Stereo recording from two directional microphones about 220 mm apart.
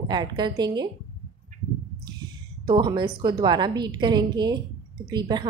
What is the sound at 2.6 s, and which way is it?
A woman's voice, 20° right (ahead or behind).